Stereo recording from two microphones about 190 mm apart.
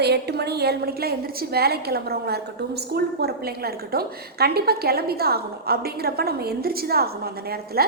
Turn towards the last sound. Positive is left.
turn(degrees=-55)  # may be behind; listen again after turning